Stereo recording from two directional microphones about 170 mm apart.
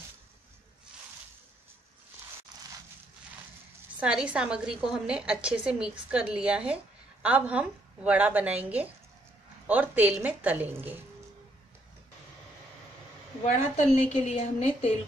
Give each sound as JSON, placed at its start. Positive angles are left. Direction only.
{"t": 4.0, "sound": "a woman's voice", "side_deg": -5}
{"t": 13.4, "sound": "a woman's voice", "side_deg": 40}